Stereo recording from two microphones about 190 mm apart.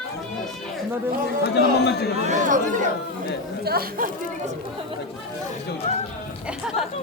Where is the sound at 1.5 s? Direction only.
60° left (ahead or behind).